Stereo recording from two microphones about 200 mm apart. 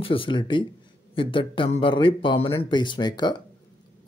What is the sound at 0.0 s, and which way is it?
Speech, 25° left (ahead or behind).